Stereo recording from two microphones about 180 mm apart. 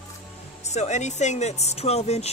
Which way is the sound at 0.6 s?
40° left (ahead or behind).